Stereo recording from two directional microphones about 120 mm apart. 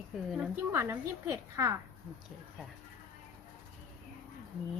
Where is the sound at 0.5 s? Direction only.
20° right (ahead or behind).